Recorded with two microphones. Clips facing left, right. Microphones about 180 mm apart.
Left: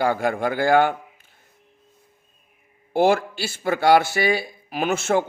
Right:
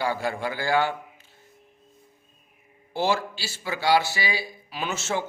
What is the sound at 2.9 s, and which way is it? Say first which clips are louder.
A man's voice: left 7 dB; 55° left (ahead or behind).